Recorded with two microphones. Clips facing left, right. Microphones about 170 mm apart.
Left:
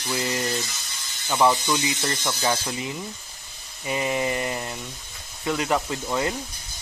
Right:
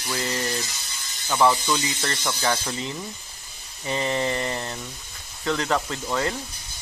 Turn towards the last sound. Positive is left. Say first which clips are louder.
# even
turn(degrees=15)  # may be behind; listen again after turning